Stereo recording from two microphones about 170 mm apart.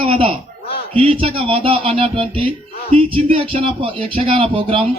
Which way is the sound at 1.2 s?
35° right (ahead or behind).